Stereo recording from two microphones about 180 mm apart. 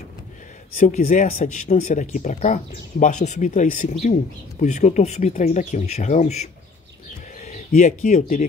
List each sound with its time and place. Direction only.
0.7 s speech: 45° left (ahead or behind)